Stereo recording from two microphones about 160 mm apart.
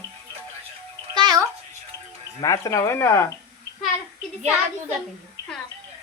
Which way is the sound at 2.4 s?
20° left (ahead or behind).